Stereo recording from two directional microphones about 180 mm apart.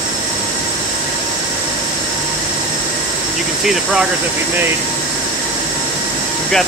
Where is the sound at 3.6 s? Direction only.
Centre (ahead or behind).